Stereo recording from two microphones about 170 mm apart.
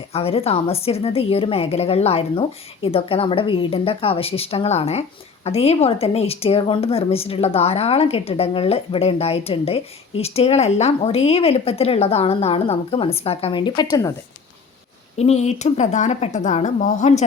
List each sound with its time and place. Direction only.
0.1 s a woman's voice: 35° left (ahead or behind)
15.1 s a woman's voice: 40° left (ahead or behind)